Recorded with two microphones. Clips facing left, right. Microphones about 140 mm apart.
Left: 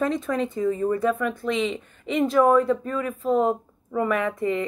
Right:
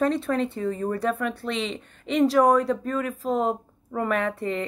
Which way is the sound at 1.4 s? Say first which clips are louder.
Left 4 dB; 35° right (ahead or behind).